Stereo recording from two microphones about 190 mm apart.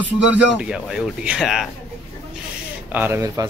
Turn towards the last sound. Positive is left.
turn(degrees=-15)  # may be behind; listen again after turning